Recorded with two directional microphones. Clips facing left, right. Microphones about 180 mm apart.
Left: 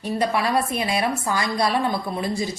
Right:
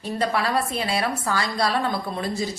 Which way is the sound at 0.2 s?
15° left (ahead or behind).